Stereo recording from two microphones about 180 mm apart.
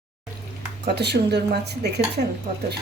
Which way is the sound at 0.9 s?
65° right (ahead or behind).